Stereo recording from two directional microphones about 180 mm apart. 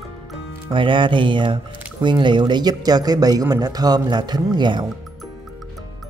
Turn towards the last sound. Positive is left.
turn(degrees=-25)  # may be behind; listen again after turning